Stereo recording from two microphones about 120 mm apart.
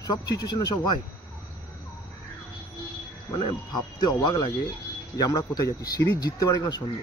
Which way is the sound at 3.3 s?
40° left (ahead or behind).